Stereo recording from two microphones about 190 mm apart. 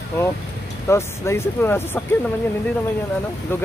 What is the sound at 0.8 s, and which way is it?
Speech, 15° left (ahead or behind).